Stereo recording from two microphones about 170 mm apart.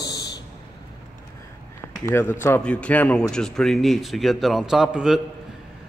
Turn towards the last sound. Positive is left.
turn(degrees=-5)  # may be behind; listen again after turning